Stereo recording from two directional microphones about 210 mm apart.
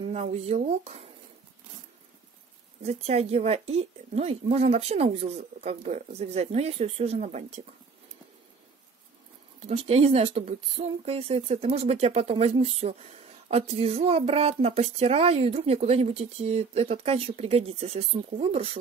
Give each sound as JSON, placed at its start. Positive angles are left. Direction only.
{"t": 0.0, "sound": "a sound", "side_deg": -30}
{"t": 0.5, "sound": "speech", "side_deg": -30}
{"t": 2.8, "sound": "speech", "side_deg": -30}
{"t": 9.6, "sound": "speech", "side_deg": -30}